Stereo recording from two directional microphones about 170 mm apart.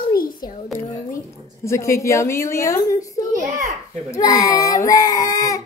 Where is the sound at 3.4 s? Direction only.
50° right (ahead or behind).